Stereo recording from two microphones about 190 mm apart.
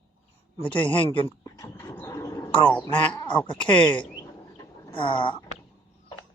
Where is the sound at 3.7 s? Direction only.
25° left (ahead or behind).